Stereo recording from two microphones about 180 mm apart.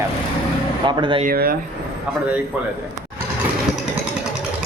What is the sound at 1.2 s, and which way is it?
Speech, 55° right (ahead or behind).